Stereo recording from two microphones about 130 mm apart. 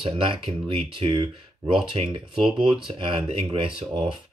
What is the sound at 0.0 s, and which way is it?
Speech, 40° right (ahead or behind).